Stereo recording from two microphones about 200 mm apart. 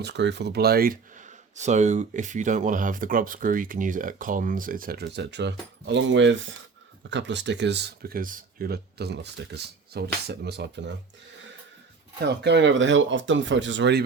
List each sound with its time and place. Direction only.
0.0 s speech: 60° right (ahead or behind)
12.2 s speech: 60° right (ahead or behind)